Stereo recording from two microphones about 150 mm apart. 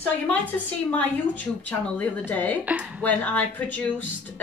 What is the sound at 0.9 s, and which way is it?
A woman's voice, 10° left (ahead or behind).